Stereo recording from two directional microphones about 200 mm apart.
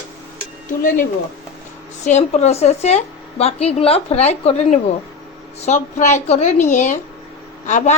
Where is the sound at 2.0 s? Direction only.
35° left (ahead or behind).